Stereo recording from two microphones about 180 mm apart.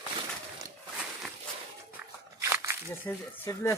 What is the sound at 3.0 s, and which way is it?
Speech, 15° left (ahead or behind).